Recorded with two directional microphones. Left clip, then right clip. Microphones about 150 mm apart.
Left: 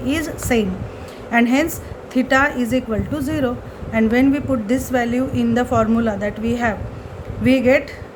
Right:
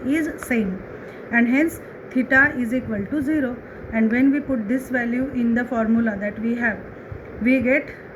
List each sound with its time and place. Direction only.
0.1 s a woman's voice: 45° left (ahead or behind)